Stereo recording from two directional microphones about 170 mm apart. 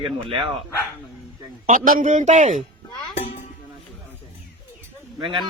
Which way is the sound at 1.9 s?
50° right (ahead or behind).